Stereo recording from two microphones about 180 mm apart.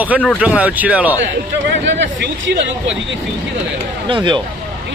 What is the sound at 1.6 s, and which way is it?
Speech, 80° right.